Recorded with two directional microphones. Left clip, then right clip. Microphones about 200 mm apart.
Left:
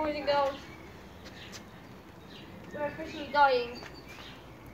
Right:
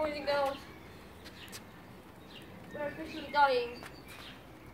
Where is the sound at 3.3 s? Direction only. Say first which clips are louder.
Left 3 dB; 20° right (ahead or behind).